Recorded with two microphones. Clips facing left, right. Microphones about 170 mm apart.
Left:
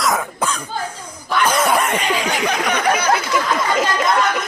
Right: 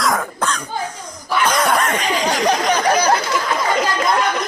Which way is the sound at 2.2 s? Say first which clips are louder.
Right 3 dB; 35° right (ahead or behind).